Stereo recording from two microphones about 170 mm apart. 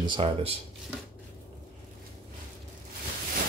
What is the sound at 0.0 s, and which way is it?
Speech, 30° right (ahead or behind).